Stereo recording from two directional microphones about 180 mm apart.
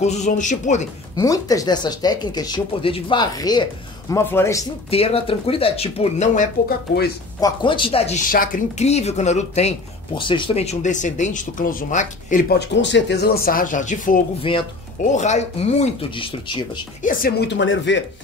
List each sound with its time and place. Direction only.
0.0 s speech: 40° left (ahead or behind)
1.1 s speech: 20° left (ahead or behind)
4.9 s speech: 30° left (ahead or behind)
7.3 s speech: 25° left (ahead or behind)
8.3 s speech: 50° left (ahead or behind)
8.8 s speech: 35° left (ahead or behind)
12.5 s speech: 80° left; by 14.2 s 45° left (ahead or behind)
14.5 s speech: 30° left (ahead or behind)
15.0 s speech: 40° left (ahead or behind)
17.0 s speech: 50° left (ahead or behind); by 18.0 s 90° left